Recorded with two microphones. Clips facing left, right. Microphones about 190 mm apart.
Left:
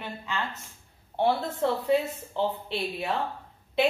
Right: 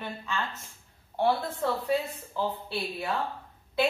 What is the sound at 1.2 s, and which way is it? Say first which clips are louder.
A woman's voice: left 2 dB; 20° left (ahead or behind).